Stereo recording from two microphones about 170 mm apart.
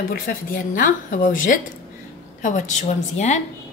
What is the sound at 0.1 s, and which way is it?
A woman's voice, 55° left (ahead or behind).